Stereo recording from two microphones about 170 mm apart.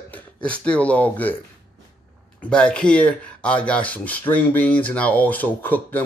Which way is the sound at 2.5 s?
5° left (ahead or behind).